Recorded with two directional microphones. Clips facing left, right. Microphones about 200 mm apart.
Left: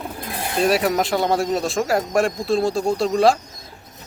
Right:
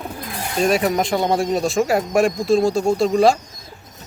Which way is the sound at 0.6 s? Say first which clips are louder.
Right 1 dB; 5° left (ahead or behind).